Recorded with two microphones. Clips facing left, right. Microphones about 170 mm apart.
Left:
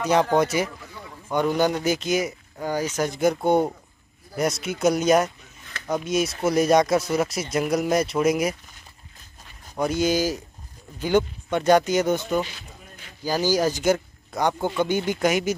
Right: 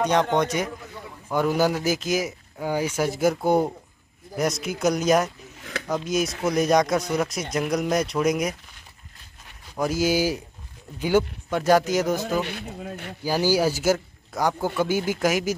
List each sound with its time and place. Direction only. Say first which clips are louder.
0.0 s speech: left 1 dB; 5° left (ahead or behind)
5.6 s a sound: right 9 dB; 80° right
6.0 s speech: left 2 dB; centre (ahead or behind)
9.8 s speech: even; centre (ahead or behind)
12.4 s speech: right 12 dB; 65° right (ahead or behind)
13.2 s speech: even; 10° right (ahead or behind)